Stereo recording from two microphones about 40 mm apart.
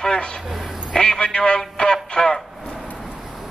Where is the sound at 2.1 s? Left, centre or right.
Centre.